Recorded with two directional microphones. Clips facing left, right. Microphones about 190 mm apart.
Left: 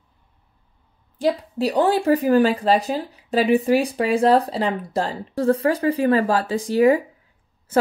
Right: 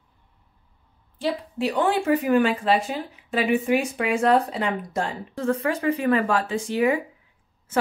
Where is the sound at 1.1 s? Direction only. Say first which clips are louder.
Left 5 dB; 40° left (ahead or behind).